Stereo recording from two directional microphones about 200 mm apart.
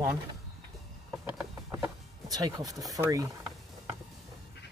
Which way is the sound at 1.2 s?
10° right (ahead or behind).